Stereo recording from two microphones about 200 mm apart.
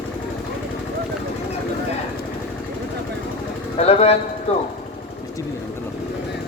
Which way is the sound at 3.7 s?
30° left (ahead or behind).